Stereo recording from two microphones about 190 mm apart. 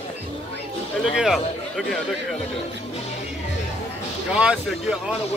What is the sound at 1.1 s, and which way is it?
Speech, centre (ahead or behind).